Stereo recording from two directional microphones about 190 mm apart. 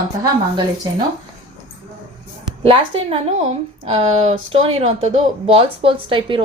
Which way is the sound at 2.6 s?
30° right (ahead or behind).